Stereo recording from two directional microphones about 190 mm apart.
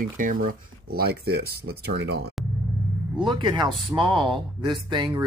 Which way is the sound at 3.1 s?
25° right (ahead or behind).